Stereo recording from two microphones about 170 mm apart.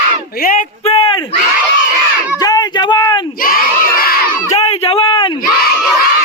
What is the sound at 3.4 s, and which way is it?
Crowd, 60° left (ahead or behind).